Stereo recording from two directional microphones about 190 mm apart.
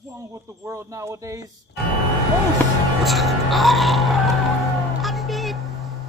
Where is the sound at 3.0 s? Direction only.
Centre (ahead or behind).